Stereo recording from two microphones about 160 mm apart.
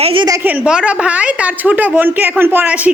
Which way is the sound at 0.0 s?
35° right (ahead or behind).